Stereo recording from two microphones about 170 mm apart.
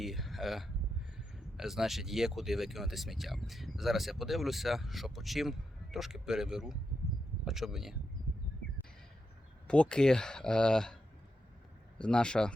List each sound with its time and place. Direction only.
0.0 s speech: centre (ahead or behind)
9.6 s speech: 5° left (ahead or behind)
11.9 s speech: 5° left (ahead or behind)